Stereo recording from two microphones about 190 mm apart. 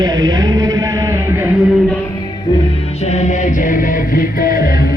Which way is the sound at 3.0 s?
40° left (ahead or behind).